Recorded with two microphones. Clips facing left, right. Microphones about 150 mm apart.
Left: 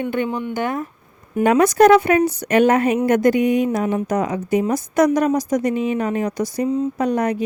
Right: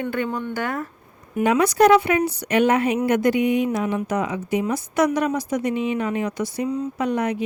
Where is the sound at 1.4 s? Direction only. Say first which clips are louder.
Left 3 dB; 50° left (ahead or behind).